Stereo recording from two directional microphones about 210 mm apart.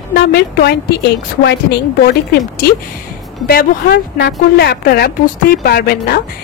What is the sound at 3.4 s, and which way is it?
A woman's voice, 50° left (ahead or behind).